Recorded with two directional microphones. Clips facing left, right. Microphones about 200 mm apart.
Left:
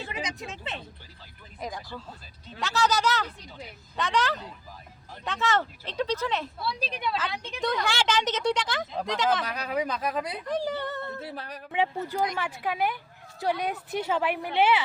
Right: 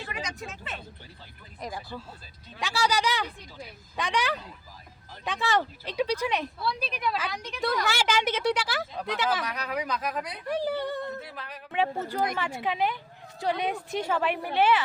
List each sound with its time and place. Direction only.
0.1 s a sound: 20° left (ahead or behind)
1.6 s speech: 5° right (ahead or behind)
6.7 s speech: 30° left (ahead or behind)
7.2 s speech: 5° right (ahead or behind)
9.5 s speech: 30° left (ahead or behind)
10.4 s speech: 10° right (ahead or behind)
11.2 s speech: 30° left (ahead or behind)
11.7 s a woman's voice: 15° left (ahead or behind)
14.1 s a woman's voice: 15° left (ahead or behind)